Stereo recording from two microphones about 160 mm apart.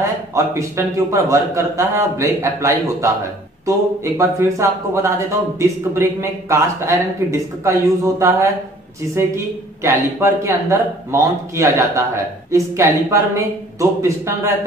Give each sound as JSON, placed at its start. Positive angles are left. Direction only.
{"t": 0.3, "sound": "a man's voice", "side_deg": -20}
{"t": 9.8, "sound": "a man's voice", "side_deg": -15}